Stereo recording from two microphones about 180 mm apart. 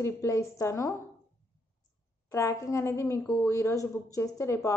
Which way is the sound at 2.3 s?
20° left (ahead or behind).